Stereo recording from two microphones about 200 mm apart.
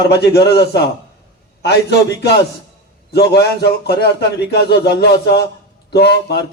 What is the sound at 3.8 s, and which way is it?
Speech, 55° left (ahead or behind).